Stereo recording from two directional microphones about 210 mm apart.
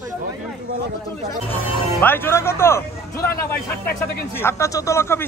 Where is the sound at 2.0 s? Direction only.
10° left (ahead or behind).